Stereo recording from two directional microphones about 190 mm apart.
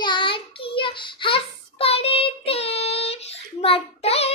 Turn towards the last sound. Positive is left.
turn(degrees=35)  # may be behind; listen again after turning